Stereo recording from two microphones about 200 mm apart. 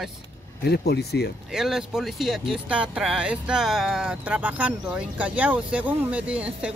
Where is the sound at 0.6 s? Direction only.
55° left (ahead or behind).